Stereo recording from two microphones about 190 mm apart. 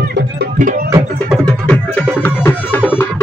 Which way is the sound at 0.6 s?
45° right (ahead or behind).